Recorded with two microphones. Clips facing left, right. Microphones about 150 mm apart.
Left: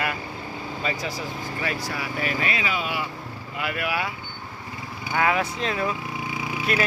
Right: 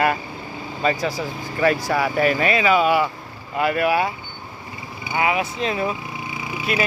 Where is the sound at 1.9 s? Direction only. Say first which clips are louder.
Right 9 dB; 65° right (ahead or behind).